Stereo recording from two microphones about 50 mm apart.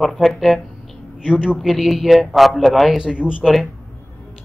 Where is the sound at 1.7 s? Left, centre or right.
Centre.